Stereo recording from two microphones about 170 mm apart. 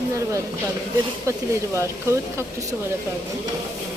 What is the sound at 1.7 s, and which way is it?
Speech, 15° right (ahead or behind).